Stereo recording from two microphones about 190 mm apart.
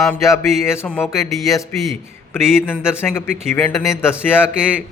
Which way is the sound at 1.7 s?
Centre (ahead or behind).